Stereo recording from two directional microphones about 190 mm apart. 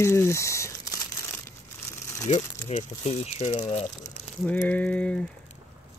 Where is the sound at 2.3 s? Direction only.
30° left (ahead or behind).